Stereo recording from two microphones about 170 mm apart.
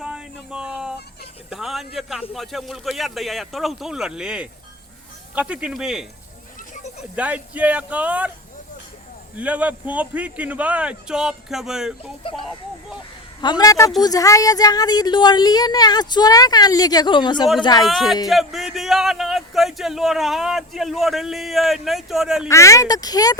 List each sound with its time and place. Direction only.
0.0 s a sound: 5° right (ahead or behind)
1.5 s speech: centre (ahead or behind)
7.2 s a man's voice: 10° right (ahead or behind)
9.3 s a man's voice: 10° right (ahead or behind)
13.4 s a woman's voice: 25° left (ahead or behind)
17.8 s speech: centre (ahead or behind)
22.4 s a woman's voice: 15° left (ahead or behind)